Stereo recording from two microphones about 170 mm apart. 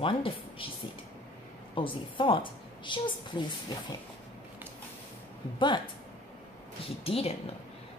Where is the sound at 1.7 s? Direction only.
30° left (ahead or behind).